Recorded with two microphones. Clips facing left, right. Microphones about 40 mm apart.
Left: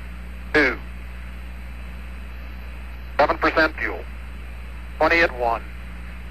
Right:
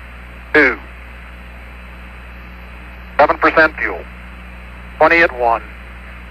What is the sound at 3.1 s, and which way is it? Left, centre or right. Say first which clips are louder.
Speech: right 7 dB; centre.